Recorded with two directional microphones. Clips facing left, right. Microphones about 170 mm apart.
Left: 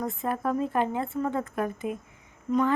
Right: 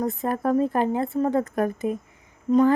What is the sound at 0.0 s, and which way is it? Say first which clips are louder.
Speech: right 4 dB; 40° right (ahead or behind).